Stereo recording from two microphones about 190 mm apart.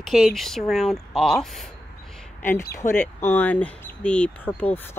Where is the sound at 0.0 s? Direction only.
Centre (ahead or behind).